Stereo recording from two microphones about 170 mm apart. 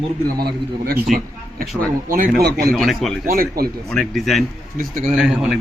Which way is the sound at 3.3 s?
60° right (ahead or behind).